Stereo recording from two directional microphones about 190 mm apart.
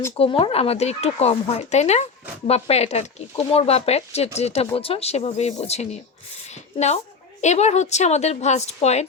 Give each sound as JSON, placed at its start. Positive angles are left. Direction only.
{"t": 0.1, "sound": "speech", "side_deg": 30}
{"t": 6.5, "sound": "a sound", "side_deg": 35}
{"t": 7.4, "sound": "speech", "side_deg": 35}